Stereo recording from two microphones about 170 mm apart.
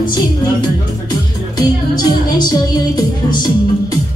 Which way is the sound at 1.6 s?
25° left (ahead or behind).